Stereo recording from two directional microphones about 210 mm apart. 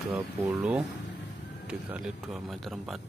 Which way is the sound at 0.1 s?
5° right (ahead or behind).